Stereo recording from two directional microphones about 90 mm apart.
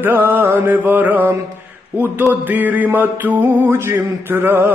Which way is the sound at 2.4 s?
20° right (ahead or behind).